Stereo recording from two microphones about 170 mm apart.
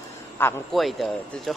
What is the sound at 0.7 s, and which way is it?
Speech, centre (ahead or behind).